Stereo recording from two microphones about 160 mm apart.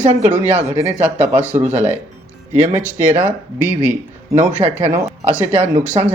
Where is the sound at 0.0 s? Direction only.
40° right (ahead or behind).